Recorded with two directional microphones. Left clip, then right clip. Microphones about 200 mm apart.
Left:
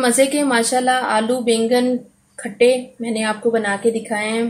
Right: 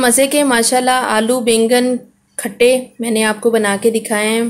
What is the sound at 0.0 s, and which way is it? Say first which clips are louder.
A woman's voice: right 3 dB; 45° right (ahead or behind).